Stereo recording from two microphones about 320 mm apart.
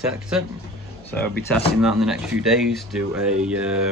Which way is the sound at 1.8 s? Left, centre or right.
Centre.